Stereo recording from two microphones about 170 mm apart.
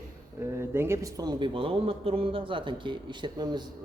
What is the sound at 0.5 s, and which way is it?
A man's voice, 15° right (ahead or behind).